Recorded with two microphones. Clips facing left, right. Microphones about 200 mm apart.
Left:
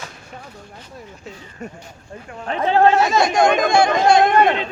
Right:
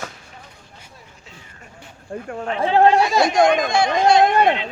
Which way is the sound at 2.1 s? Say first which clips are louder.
Right 7 dB; 45° right (ahead or behind).